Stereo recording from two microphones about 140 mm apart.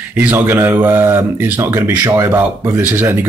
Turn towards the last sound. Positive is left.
turn(degrees=-15)  # may be behind; listen again after turning